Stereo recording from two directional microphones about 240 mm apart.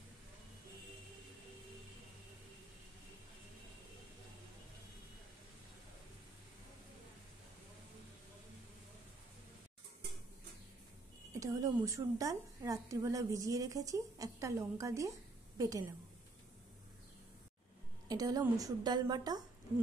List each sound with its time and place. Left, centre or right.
11.3 s a woman's voice: centre
18.0 s a woman's voice: centre